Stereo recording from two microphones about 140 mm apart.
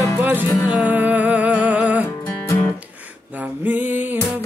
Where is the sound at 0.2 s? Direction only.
15° right (ahead or behind).